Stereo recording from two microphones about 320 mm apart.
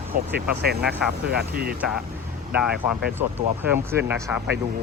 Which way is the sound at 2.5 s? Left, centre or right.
Centre.